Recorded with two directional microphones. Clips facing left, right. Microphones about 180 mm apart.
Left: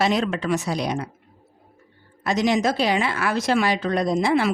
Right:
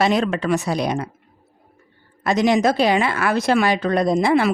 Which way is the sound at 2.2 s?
55° right (ahead or behind).